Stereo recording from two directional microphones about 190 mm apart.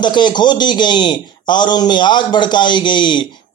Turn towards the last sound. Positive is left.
turn(degrees=25)  # may be behind; listen again after turning